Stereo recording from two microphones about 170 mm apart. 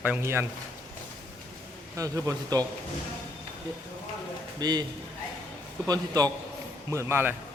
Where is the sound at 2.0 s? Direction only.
20° right (ahead or behind).